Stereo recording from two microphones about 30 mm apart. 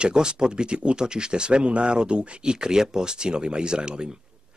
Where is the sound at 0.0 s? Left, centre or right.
Right.